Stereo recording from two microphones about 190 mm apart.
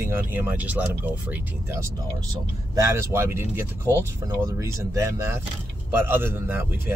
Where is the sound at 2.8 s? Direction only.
15° right (ahead or behind).